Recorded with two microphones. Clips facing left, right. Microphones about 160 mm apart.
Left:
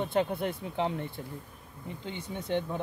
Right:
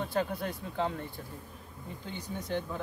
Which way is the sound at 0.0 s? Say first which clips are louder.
Left 3 dB; 20° left (ahead or behind).